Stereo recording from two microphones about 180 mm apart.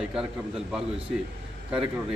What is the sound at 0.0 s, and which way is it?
A man's voice, 5° right (ahead or behind).